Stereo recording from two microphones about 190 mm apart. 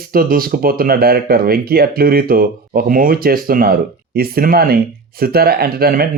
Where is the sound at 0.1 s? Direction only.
50° right (ahead or behind).